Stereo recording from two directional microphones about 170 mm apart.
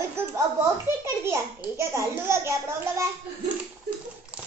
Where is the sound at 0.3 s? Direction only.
15° right (ahead or behind).